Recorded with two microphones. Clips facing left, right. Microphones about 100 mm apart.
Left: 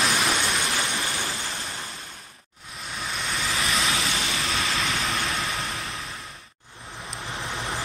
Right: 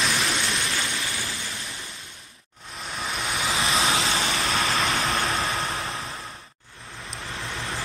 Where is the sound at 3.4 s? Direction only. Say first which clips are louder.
Right 3 dB; 30° right (ahead or behind).